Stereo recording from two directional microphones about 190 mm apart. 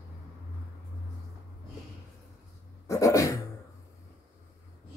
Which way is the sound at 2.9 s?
15° left (ahead or behind).